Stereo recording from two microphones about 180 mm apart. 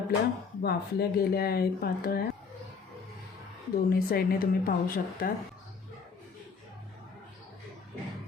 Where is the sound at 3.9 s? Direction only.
55° left (ahead or behind).